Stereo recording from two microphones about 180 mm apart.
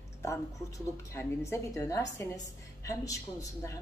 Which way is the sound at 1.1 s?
15° left (ahead or behind).